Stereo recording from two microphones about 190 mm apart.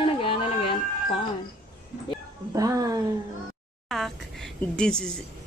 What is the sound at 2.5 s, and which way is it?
Speech, 20° right (ahead or behind).